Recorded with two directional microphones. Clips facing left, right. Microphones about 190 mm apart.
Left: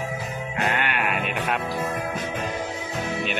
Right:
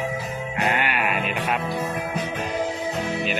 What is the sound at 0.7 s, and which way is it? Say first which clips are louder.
Sheep: right 1 dB; 5° right (ahead or behind).